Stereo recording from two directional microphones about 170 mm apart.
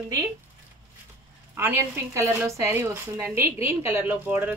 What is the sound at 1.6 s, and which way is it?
A woman's voice, 15° right (ahead or behind).